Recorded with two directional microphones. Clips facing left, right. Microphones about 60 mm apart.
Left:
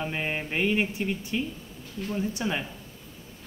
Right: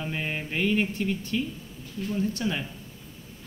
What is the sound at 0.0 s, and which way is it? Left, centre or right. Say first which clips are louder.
Mantra: left 1 dB; centre.